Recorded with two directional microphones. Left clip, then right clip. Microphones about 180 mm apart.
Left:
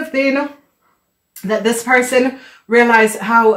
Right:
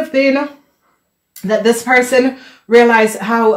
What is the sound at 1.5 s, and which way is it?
Speech, 35° right (ahead or behind).